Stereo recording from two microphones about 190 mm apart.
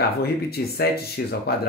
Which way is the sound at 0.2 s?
55° left (ahead or behind).